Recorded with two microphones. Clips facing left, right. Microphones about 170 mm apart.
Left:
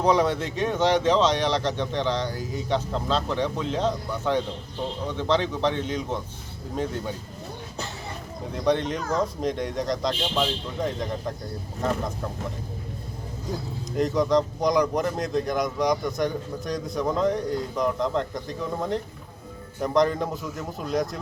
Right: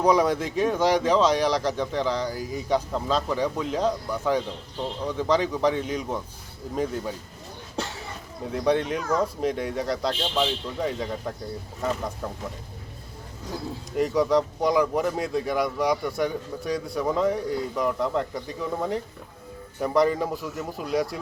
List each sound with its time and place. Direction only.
0.0 s speech: 10° right (ahead or behind)
8.6 s speech: 5° right (ahead or behind)
13.9 s speech: 10° right (ahead or behind)